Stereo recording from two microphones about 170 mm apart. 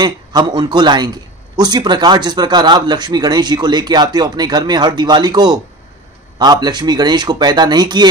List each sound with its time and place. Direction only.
0.0 s speech: 25° right (ahead or behind)